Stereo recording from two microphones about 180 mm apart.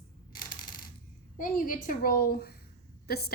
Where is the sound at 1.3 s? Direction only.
50° left (ahead or behind).